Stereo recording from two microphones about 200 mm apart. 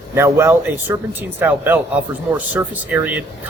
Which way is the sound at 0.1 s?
10° right (ahead or behind).